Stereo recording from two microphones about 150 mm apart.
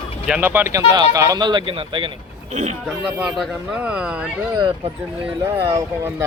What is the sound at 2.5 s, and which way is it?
Speech, 50° right (ahead or behind).